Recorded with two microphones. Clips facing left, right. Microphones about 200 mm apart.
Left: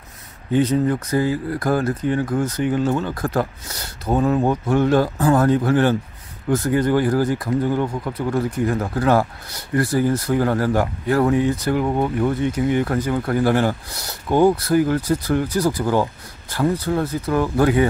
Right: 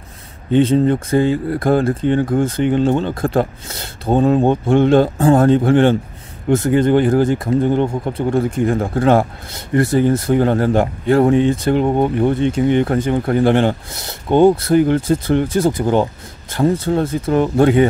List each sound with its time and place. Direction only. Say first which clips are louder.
0.5 s speech: right 5 dB; 25° right (ahead or behind)